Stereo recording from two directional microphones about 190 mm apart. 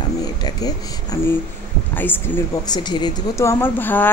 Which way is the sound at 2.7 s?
25° left (ahead or behind).